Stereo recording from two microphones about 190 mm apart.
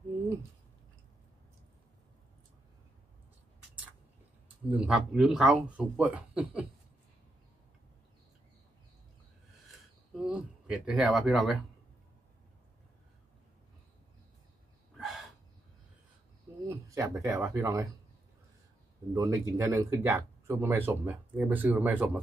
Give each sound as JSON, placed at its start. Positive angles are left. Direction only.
{"t": 4.6, "sound": "speech", "side_deg": -5}
{"t": 9.7, "sound": "speech", "side_deg": 0}
{"t": 15.0, "sound": "a sound", "side_deg": 0}
{"t": 16.6, "sound": "speech", "side_deg": -15}
{"t": 19.1, "sound": "speech", "side_deg": -15}